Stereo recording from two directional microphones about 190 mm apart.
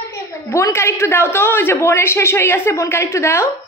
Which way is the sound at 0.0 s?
15° left (ahead or behind).